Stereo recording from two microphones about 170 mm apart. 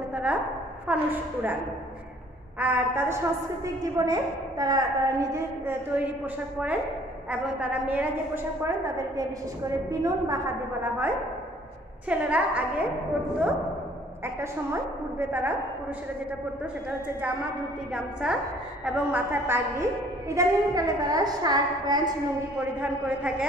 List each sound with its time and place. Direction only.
0.1 s a woman's voice: 10° right (ahead or behind)
2.6 s a woman's voice: 10° right (ahead or behind)
7.2 s a woman's voice: 5° right (ahead or behind)
12.1 s a woman's voice: 10° right (ahead or behind)
14.2 s a woman's voice: 15° right (ahead or behind)
17.9 s a woman's voice: 5° right (ahead or behind); by 22.0 s 25° right (ahead or behind)
22.6 s a woman's voice: 10° right (ahead or behind)